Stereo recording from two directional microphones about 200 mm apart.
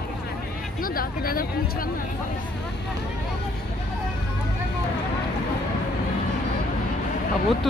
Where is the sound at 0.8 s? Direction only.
45° left (ahead or behind).